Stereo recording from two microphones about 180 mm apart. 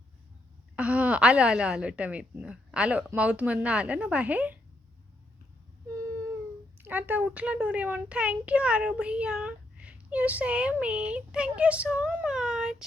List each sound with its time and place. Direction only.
0.8 s a woman's voice: 5° right (ahead or behind)
6.0 s a sound: 15° right (ahead or behind)
6.8 s a child's voice: 10° right (ahead or behind)